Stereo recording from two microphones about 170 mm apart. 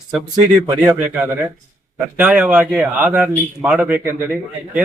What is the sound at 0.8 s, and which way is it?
A man's voice, 15° right (ahead or behind).